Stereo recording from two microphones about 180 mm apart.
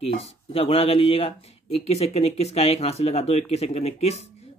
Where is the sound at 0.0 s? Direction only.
35° left (ahead or behind).